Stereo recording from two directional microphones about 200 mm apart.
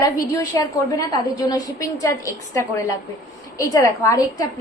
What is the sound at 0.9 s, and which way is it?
A woman's voice, 20° left (ahead or behind).